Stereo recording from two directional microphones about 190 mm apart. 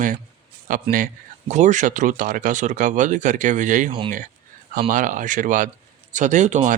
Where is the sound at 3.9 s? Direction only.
25° right (ahead or behind).